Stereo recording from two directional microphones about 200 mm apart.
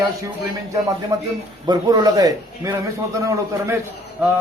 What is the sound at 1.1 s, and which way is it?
A man's voice, 15° right (ahead or behind).